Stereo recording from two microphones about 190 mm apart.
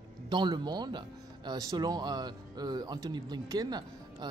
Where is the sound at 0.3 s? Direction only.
25° right (ahead or behind).